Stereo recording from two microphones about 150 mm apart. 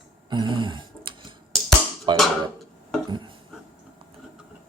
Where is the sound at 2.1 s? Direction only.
30° right (ahead or behind).